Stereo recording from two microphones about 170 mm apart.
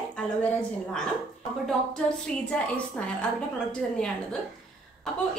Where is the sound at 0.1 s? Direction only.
5° left (ahead or behind).